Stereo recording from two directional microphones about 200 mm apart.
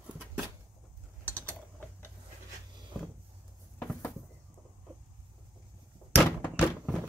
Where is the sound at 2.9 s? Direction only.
5° right (ahead or behind).